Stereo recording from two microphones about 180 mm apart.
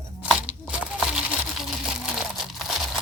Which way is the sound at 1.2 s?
5° right (ahead or behind).